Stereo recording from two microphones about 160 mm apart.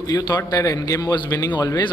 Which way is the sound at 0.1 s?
25° left (ahead or behind).